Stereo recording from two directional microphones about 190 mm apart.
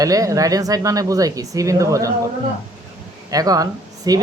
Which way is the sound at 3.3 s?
20° right (ahead or behind).